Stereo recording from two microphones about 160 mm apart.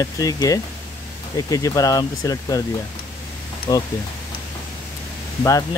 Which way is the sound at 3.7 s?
20° left (ahead or behind).